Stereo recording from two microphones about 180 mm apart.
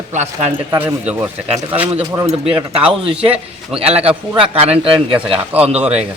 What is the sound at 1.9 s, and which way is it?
Speech, 30° right (ahead or behind).